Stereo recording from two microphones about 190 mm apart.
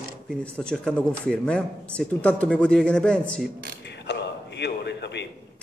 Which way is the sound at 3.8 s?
65° left (ahead or behind).